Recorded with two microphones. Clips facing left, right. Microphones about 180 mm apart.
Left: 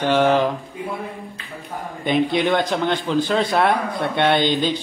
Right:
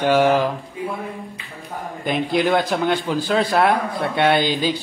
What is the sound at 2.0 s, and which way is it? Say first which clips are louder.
A man's voice: left 1 dB; centre (ahead or behind).